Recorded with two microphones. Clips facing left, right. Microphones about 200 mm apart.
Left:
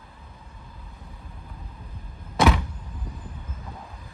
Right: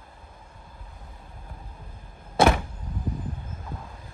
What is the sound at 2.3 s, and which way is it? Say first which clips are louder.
Door: right 1 dB; 50° right (ahead or behind).